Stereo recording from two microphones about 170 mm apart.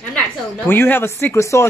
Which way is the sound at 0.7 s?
15° left (ahead or behind).